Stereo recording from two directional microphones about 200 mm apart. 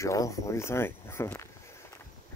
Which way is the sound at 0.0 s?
15° left (ahead or behind).